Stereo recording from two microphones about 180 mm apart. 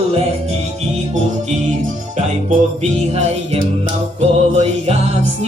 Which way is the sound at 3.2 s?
40° right (ahead or behind).